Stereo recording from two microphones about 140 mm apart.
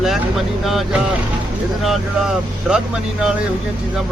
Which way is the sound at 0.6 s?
Centre (ahead or behind).